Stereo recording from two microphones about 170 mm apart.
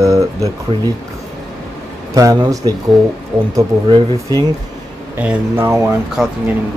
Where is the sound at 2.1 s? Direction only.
20° right (ahead or behind).